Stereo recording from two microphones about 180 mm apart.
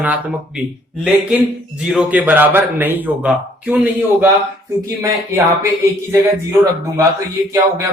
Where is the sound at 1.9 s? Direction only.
10° right (ahead or behind).